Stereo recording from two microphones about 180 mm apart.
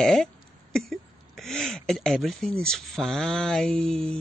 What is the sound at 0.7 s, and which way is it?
Speech, centre (ahead or behind).